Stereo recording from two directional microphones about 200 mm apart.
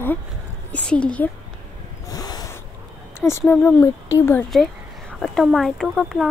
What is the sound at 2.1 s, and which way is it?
Snort, 20° left (ahead or behind).